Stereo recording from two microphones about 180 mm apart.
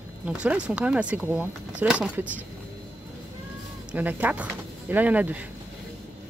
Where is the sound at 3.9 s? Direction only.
10° right (ahead or behind).